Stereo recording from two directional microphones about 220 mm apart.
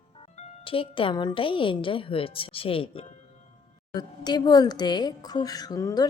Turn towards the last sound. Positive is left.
turn(degrees=15)  # may be behind; listen again after turning